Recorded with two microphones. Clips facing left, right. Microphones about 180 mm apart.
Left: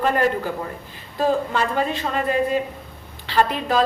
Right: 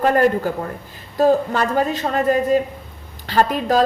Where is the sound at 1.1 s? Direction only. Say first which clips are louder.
Right 5 dB; 40° right (ahead or behind).